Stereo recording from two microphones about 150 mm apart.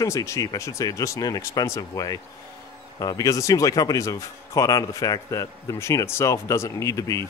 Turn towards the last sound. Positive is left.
turn(degrees=20)  # may be behind; listen again after turning